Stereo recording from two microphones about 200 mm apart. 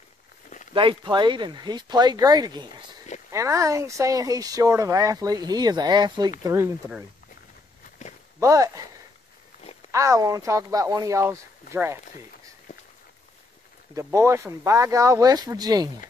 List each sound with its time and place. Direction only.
0.7 s speech: 25° right (ahead or behind)
8.4 s speech: 15° right (ahead or behind)
9.8 s speech: 15° right (ahead or behind)
13.9 s speech: 15° right (ahead or behind)